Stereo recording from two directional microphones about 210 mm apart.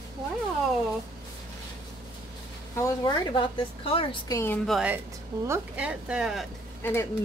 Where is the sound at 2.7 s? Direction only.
15° left (ahead or behind); by 6.4 s centre (ahead or behind).